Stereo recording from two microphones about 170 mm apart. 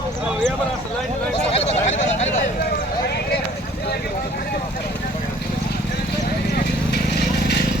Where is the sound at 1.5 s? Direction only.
40° left (ahead or behind).